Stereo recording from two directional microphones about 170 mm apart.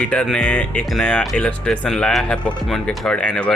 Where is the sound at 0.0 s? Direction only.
5° left (ahead or behind).